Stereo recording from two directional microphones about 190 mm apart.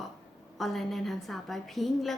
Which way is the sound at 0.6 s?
Centre (ahead or behind).